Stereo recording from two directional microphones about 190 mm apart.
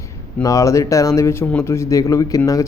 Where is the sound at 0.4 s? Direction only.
15° left (ahead or behind).